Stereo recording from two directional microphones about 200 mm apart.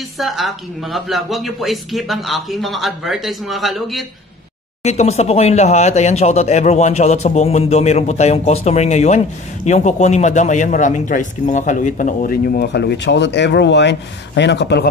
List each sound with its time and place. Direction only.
0.2 s speech: centre (ahead or behind)
4.8 s speech: 35° left (ahead or behind); by 14.9 s 60° left (ahead or behind)